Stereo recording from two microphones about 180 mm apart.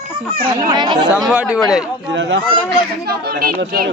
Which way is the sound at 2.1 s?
90° right.